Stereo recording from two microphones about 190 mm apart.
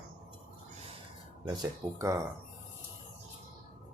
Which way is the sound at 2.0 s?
15° right (ahead or behind).